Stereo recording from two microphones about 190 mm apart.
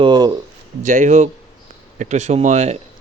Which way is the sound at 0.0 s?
20° right (ahead or behind).